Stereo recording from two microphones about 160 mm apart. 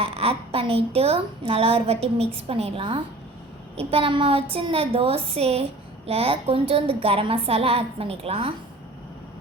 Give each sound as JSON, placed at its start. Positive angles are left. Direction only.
{"t": 0.0, "sound": "a woman's voice", "side_deg": -35}